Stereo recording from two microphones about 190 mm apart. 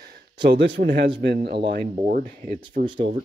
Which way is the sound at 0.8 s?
55° right (ahead or behind).